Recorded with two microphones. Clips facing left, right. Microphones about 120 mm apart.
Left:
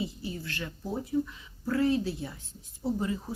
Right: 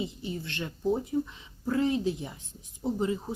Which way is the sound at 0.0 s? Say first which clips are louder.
Right 1 dB; 20° right (ahead or behind).